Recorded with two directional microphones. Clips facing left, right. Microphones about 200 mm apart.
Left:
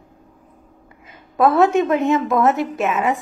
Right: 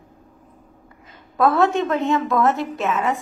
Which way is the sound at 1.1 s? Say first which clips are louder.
Left 2 dB; 20° left (ahead or behind).